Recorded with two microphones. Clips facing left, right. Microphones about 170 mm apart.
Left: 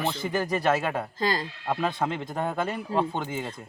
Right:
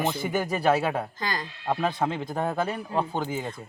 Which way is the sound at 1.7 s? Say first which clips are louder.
Right 1 dB; 5° right (ahead or behind).